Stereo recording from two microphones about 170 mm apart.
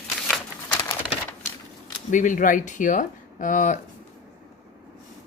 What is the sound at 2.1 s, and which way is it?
Speech, 50° left (ahead or behind).